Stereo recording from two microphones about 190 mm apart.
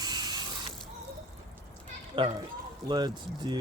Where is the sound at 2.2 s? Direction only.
25° right (ahead or behind).